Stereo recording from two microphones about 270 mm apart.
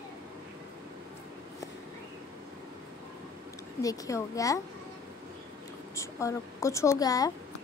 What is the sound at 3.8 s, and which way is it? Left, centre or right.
Speech, centre.